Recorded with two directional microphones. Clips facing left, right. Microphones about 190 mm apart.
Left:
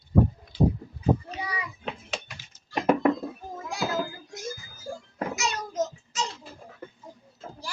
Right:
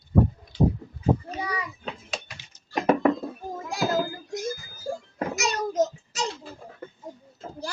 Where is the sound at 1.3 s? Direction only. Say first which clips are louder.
Right 3 dB; 45° right (ahead or behind).